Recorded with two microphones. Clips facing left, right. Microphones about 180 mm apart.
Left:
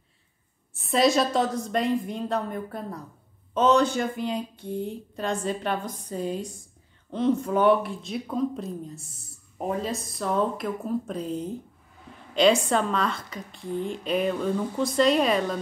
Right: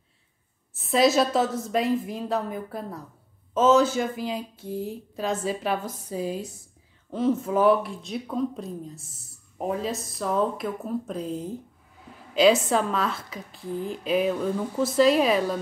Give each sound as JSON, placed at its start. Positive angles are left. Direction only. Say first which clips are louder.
{"t": 0.7, "sound": "speech", "louder": "right 1 dB", "side_deg": 0}